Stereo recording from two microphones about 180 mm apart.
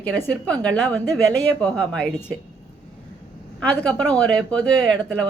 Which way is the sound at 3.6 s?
5° left (ahead or behind).